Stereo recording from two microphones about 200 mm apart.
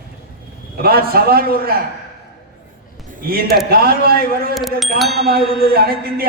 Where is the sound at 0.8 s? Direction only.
50° right (ahead or behind).